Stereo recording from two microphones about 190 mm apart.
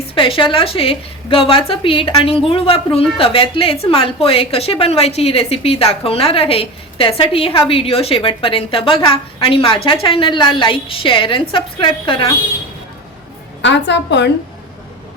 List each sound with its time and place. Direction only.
0.1 s a woman's voice: 30° left (ahead or behind)
13.6 s a woman's voice: 70° left (ahead or behind)